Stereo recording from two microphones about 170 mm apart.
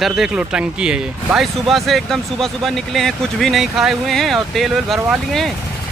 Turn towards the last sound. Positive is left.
turn(degrees=0)  # may be behind; listen again after turning